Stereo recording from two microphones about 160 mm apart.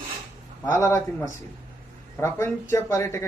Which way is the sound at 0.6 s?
15° left (ahead or behind).